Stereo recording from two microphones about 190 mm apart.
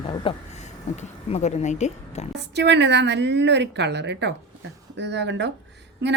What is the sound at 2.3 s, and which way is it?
A woman's voice, 65° right (ahead or behind).